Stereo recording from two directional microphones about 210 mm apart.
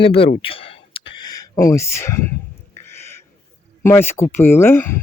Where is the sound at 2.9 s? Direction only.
10° left (ahead or behind).